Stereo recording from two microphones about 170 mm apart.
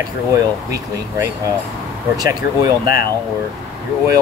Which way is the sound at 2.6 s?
20° right (ahead or behind).